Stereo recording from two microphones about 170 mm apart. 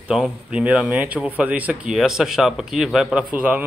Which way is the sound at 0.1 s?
5° right (ahead or behind).